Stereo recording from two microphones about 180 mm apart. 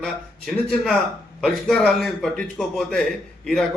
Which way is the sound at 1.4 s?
5° left (ahead or behind).